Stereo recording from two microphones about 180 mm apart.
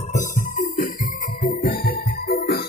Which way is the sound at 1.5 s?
55° left (ahead or behind).